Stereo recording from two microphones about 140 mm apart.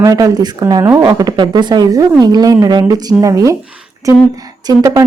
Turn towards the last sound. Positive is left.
turn(degrees=-25)  # may be behind; listen again after turning